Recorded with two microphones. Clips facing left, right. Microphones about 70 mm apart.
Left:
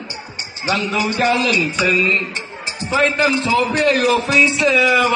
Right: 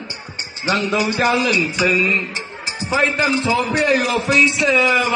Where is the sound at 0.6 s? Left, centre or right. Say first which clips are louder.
Right 1 dB; right.